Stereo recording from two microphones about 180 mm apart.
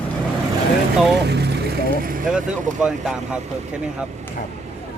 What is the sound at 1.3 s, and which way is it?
Vehicle, 65° right (ahead or behind).